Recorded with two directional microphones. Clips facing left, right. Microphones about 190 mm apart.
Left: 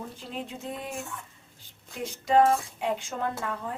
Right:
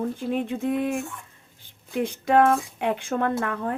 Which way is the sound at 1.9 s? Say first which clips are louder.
Right 3 dB; 60° right (ahead or behind).